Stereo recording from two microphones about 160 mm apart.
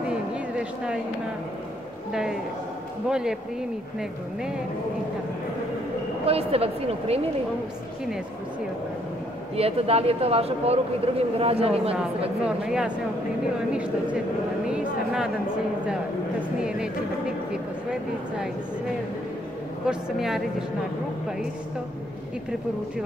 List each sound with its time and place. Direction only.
0.1 s a sound: 5° right (ahead or behind)
3.1 s a woman's voice: 5° right (ahead or behind)
6.2 s speech: 40° right (ahead or behind)
9.6 s speech: 40° right (ahead or behind)
12.4 s a woman's voice: 5° right (ahead or behind)
16.6 s a woman's voice: 5° right (ahead or behind)
19.9 s a woman's voice: centre (ahead or behind)